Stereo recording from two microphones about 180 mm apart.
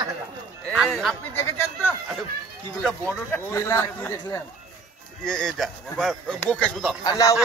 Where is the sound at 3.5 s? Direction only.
15° left (ahead or behind).